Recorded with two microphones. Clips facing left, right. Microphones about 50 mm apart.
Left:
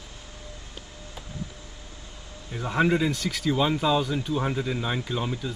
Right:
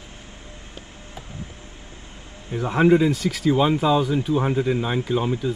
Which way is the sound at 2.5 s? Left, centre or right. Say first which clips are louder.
Right 6 dB; centre.